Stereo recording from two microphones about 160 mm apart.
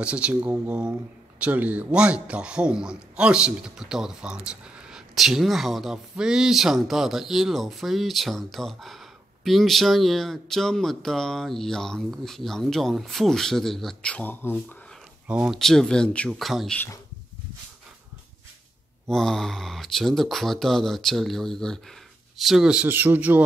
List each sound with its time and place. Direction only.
0.0 s a man's voice: 10° right (ahead or behind); by 15.0 s 10° left (ahead or behind)
15.2 s a man's voice: 10° right (ahead or behind)
19.0 s a man's voice: 5° left (ahead or behind)